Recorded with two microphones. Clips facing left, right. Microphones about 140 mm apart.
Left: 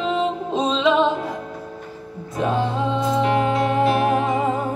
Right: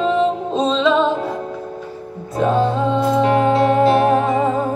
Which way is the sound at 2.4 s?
30° right (ahead or behind).